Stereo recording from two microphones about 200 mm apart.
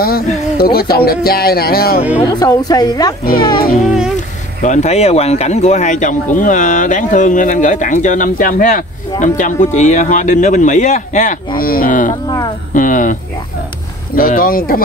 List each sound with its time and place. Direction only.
0.0 s music: 50° left (ahead or behind)
2.1 s speech: 20° left (ahead or behind)
4.6 s speech: 35° left (ahead or behind)
14.1 s music: 45° left (ahead or behind)